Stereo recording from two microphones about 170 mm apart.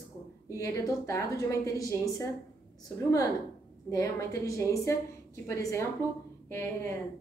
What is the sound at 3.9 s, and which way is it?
A woman's voice, 20° left (ahead or behind).